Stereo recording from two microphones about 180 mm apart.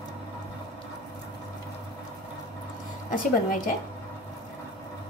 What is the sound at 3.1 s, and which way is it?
Speech, 50° left (ahead or behind).